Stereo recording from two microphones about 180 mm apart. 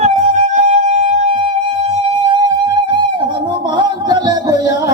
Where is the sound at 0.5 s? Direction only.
40° right (ahead or behind).